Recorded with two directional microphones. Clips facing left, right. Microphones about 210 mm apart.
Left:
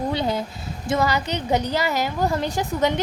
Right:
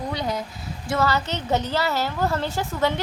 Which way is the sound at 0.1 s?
30° left (ahead or behind).